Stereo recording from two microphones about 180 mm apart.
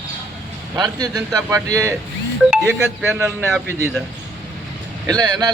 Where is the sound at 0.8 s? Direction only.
20° right (ahead or behind).